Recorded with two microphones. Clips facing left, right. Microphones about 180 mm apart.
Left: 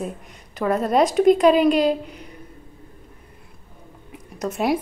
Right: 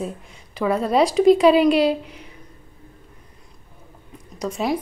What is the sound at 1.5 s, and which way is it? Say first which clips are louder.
Speech: right 1 dB; 40° left (ahead or behind).